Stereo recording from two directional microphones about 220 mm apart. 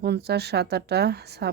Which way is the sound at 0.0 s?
50° right (ahead or behind).